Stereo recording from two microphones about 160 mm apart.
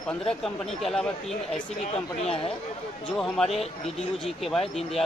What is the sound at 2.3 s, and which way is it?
Speech, 35° left (ahead or behind).